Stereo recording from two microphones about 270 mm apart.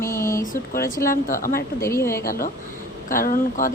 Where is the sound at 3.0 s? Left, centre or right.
Left.